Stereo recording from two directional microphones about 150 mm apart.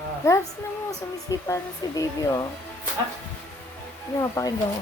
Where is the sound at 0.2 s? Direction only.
20° left (ahead or behind).